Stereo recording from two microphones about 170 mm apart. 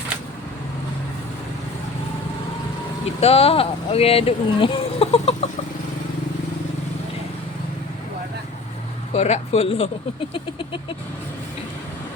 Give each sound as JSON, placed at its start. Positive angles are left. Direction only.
{"t": 3.2, "sound": "speech", "side_deg": 35}
{"t": 9.1, "sound": "speech", "side_deg": 40}